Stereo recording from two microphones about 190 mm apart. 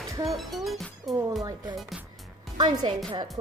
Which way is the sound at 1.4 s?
20° right (ahead or behind).